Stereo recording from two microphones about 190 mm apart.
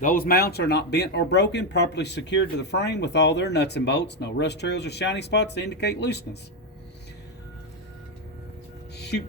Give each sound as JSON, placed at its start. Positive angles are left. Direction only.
{"t": 0.0, "sound": "speech", "side_deg": 50}